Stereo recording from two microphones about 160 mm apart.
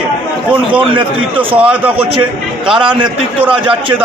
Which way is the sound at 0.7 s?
30° right (ahead or behind).